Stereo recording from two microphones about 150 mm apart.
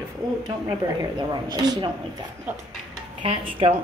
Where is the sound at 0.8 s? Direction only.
25° right (ahead or behind).